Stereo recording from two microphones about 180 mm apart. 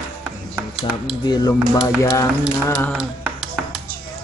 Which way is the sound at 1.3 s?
20° left (ahead or behind).